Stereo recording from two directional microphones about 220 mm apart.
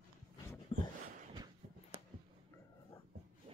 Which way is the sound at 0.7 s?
25° left (ahead or behind).